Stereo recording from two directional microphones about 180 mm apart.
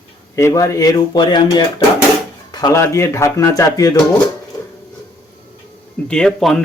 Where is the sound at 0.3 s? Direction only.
15° left (ahead or behind).